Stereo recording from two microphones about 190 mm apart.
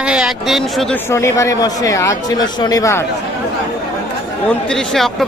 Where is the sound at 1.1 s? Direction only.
15° left (ahead or behind).